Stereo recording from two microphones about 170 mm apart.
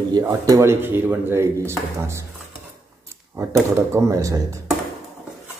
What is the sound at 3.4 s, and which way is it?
Speech, 15° right (ahead or behind).